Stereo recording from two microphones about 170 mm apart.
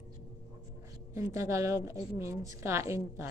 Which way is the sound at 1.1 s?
20° right (ahead or behind).